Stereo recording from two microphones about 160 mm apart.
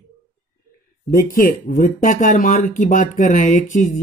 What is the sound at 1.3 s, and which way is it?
Speech, 60° left (ahead or behind).